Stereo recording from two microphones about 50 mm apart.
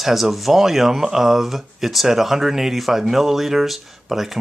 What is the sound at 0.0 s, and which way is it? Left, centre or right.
Speech, centre.